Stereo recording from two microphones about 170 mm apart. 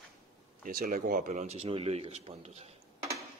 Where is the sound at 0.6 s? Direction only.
60° right (ahead or behind); by 2.6 s 40° right (ahead or behind).